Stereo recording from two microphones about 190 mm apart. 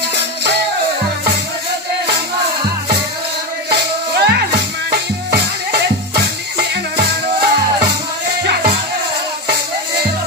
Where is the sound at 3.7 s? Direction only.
60° right (ahead or behind).